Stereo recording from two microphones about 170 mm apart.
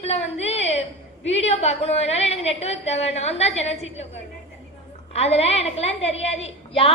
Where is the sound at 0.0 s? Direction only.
40° left (ahead or behind).